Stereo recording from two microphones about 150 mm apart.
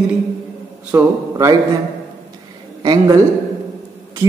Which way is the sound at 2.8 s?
30° right (ahead or behind).